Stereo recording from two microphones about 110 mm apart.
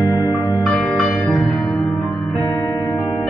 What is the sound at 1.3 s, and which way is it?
Music, centre (ahead or behind).